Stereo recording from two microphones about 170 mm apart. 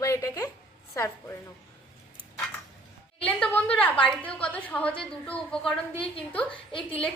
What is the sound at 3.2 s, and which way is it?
A woman's voice, 10° left (ahead or behind).